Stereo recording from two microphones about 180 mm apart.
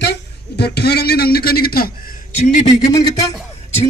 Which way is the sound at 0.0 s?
65° left (ahead or behind).